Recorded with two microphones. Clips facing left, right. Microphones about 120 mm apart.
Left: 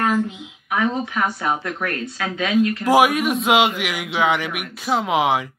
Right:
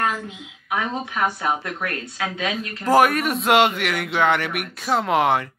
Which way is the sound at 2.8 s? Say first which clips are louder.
Right 2 dB; 5° left (ahead or behind).